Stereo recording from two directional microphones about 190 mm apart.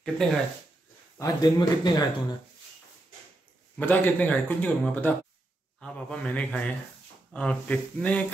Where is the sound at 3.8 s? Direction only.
10° left (ahead or behind).